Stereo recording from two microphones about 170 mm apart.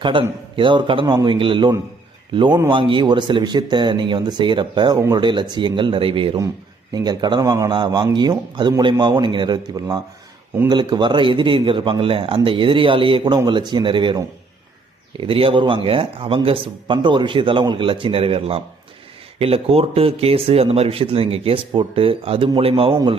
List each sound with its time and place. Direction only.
0.0 s speech: 30° right (ahead or behind)
15.2 s speech: 30° right (ahead or behind)